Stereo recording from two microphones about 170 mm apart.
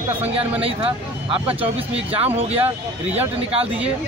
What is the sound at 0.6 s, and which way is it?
Speech, 30° right (ahead or behind).